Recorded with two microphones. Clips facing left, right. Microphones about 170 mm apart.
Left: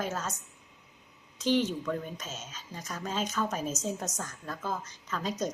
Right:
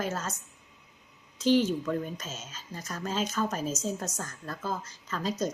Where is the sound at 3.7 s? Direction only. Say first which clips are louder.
Right 1 dB; 15° left (ahead or behind).